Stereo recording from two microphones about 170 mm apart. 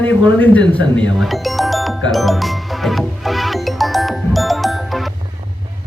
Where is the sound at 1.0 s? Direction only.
Centre (ahead or behind).